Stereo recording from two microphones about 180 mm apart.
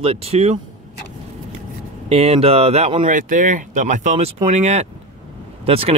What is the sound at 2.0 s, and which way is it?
Speech, 35° right (ahead or behind).